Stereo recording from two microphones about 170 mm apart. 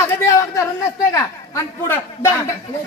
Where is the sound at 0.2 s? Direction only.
20° left (ahead or behind).